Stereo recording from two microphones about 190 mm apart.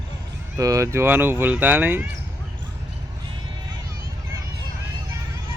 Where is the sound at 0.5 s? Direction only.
15° right (ahead or behind).